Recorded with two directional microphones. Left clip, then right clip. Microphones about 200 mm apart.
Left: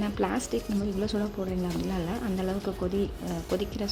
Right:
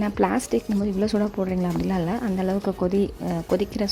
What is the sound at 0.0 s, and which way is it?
Speech, 25° right (ahead or behind).